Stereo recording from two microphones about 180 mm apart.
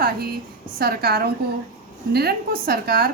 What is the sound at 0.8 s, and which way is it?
A woman's voice, 60° right (ahead or behind).